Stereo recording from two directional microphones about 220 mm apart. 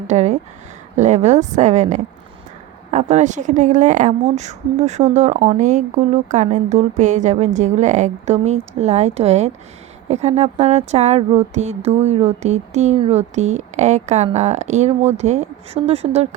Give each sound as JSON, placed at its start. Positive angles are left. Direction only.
{"t": 0.1, "sound": "a woman's voice", "side_deg": -30}